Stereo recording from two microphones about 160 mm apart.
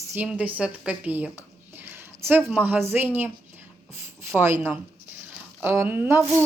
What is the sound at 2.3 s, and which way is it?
Speech, 10° right (ahead or behind).